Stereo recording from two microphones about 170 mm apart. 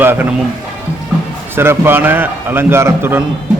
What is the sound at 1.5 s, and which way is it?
A man's voice, 15° right (ahead or behind).